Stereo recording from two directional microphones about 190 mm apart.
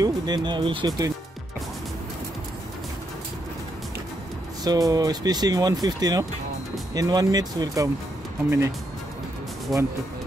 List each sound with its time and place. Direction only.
0.0 s speech: 20° right (ahead or behind)
4.6 s speech: 20° right (ahead or behind)
9.7 s speech: centre (ahead or behind)